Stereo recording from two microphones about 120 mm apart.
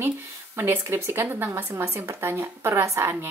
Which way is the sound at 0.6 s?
20° right (ahead or behind).